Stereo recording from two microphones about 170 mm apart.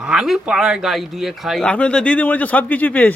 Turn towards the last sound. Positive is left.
turn(degrees=10)  # may be behind; listen again after turning